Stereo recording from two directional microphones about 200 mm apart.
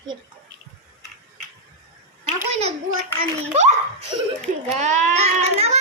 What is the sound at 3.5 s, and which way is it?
A child's voice, 35° right (ahead or behind).